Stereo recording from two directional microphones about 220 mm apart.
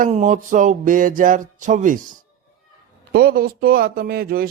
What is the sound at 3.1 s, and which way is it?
Speech, 45° right (ahead or behind).